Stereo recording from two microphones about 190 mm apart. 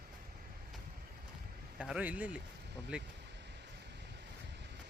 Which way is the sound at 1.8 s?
5° right (ahead or behind).